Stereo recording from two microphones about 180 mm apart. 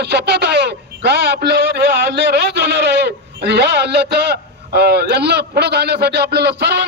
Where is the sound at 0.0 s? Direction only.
65° right (ahead or behind).